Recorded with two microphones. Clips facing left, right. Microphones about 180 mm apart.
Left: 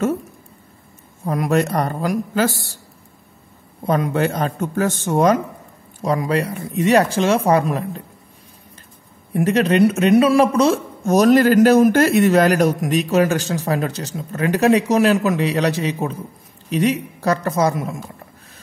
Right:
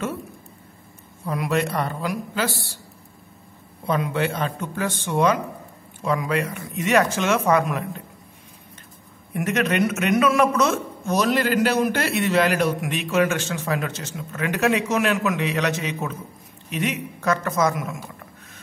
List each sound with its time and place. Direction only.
1.2 s speech: 45° left (ahead or behind)
3.8 s a man's voice: 45° left (ahead or behind)
9.3 s a man's voice: 30° left (ahead or behind)
11.1 s a man's voice: 45° left (ahead or behind)